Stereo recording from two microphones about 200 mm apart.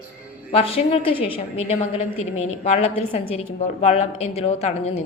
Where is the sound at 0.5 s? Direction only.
30° left (ahead or behind).